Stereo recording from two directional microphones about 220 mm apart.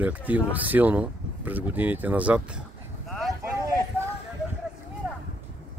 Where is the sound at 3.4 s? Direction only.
15° right (ahead or behind).